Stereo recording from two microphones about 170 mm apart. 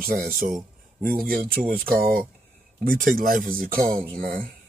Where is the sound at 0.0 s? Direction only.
60° right (ahead or behind).